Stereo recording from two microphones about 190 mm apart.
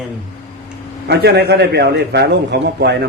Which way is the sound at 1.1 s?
60° right (ahead or behind).